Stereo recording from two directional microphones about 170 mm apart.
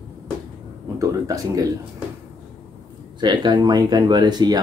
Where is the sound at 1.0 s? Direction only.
20° right (ahead or behind).